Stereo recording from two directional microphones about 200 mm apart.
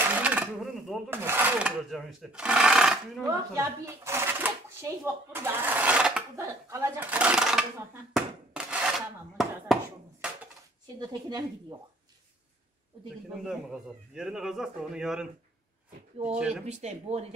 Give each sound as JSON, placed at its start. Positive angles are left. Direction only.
{"t": 0.0, "sound": "sewing machine", "side_deg": -10}
{"t": 1.2, "sound": "speech", "side_deg": -10}
{"t": 3.3, "sound": "speech", "side_deg": -15}
{"t": 6.3, "sound": "a sound", "side_deg": -15}
{"t": 11.0, "sound": "speech", "side_deg": -20}
{"t": 13.3, "sound": "speech", "side_deg": 0}
{"t": 16.6, "sound": "speech", "side_deg": -35}